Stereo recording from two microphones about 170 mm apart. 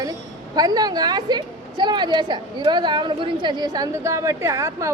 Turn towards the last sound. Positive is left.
turn(degrees=-15)  # may be behind; listen again after turning